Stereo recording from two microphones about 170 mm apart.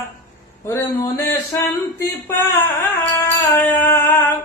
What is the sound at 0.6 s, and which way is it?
Speech, 15° left (ahead or behind).